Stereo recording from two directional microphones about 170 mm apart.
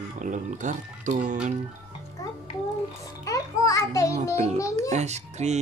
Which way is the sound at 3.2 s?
20° left (ahead or behind).